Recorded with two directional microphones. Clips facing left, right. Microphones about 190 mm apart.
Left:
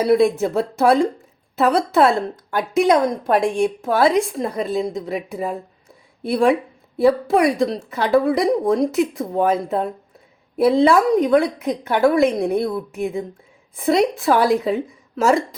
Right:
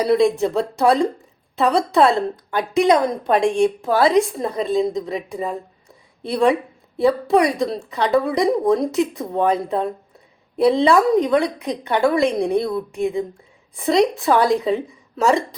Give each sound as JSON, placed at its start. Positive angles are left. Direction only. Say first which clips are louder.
{"t": 0.0, "sound": "a woman's voice", "louder": "left 1 dB", "side_deg": 0}